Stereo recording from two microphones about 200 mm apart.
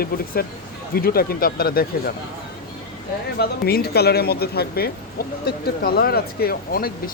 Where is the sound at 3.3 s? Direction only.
50° left (ahead or behind).